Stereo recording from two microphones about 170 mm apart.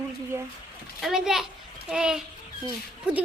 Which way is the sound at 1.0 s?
Centre (ahead or behind).